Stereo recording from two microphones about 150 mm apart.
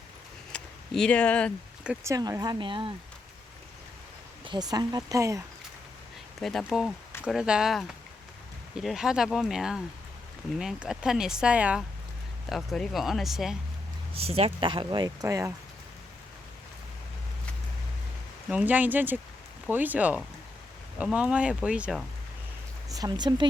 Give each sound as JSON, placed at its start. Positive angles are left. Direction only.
{"t": 0.5, "sound": "speech", "side_deg": 5}
{"t": 2.0, "sound": "speech", "side_deg": -20}
{"t": 4.4, "sound": "speech", "side_deg": -30}
{"t": 6.4, "sound": "speech", "side_deg": 0}
{"t": 14.3, "sound": "speech", "side_deg": -40}
{"t": 18.4, "sound": "speech", "side_deg": -10}
{"t": 22.9, "sound": "speech", "side_deg": -25}